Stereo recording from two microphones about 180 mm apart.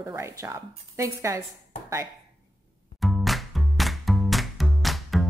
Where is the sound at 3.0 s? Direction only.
Centre (ahead or behind).